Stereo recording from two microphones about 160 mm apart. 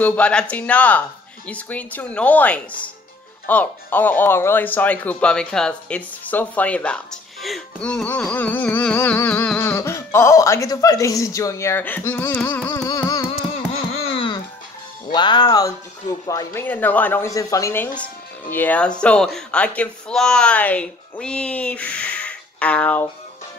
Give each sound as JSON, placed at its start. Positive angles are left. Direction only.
{"t": 0.0, "sound": "music", "side_deg": 10}
{"t": 12.4, "sound": "carnatic music", "side_deg": 15}
{"t": 13.9, "sound": "a sound", "side_deg": 35}
{"t": 15.1, "sound": "speech", "side_deg": 30}
{"t": 16.3, "sound": "music", "side_deg": 15}